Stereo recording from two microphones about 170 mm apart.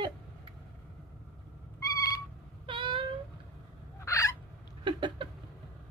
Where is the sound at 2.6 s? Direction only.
30° right (ahead or behind).